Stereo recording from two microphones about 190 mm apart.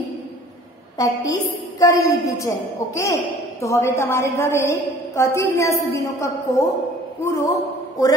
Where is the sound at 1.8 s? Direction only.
20° left (ahead or behind).